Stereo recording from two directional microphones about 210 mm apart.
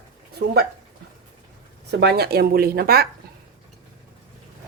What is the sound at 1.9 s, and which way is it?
Speech, 50° right (ahead or behind).